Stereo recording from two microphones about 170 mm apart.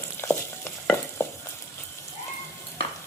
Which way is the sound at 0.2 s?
10° left (ahead or behind).